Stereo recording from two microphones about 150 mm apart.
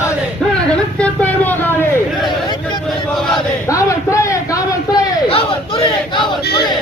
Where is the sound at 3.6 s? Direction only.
20° left (ahead or behind).